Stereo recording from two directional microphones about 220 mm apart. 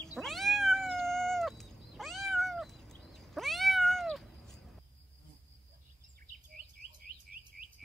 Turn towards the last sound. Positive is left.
turn(degrees=-40)  # may be behind; listen again after turning